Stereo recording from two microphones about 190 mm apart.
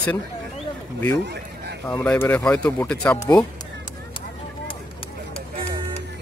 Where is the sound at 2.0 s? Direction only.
10° left (ahead or behind).